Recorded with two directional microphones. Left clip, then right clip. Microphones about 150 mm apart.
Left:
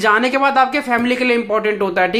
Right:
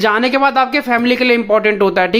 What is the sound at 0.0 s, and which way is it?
Speech, 25° right (ahead or behind).